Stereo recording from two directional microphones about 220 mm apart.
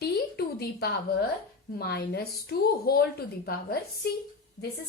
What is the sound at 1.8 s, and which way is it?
A woman's voice, 45° left (ahead or behind).